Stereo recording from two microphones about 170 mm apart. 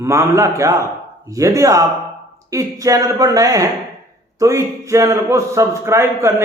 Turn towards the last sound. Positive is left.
turn(degrees=-15)  # may be behind; listen again after turning